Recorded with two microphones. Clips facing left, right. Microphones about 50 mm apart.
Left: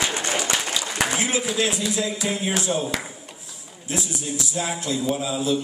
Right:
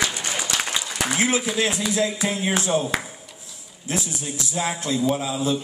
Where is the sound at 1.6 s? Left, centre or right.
Right.